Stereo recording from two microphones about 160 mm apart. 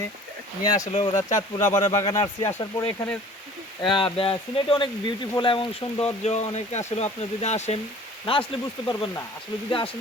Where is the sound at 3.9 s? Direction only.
35° left (ahead or behind).